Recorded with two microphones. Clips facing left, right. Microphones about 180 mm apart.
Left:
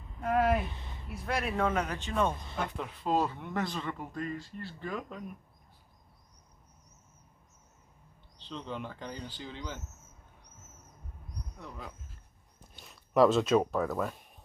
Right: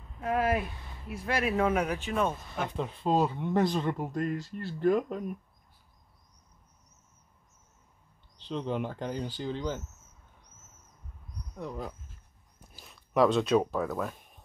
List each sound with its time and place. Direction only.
0.2 s speech: centre (ahead or behind)
2.7 s speech: 25° right (ahead or behind)
3.5 s speech: 35° right (ahead or behind)
8.5 s speech: 50° right (ahead or behind)
12.7 s speech: centre (ahead or behind)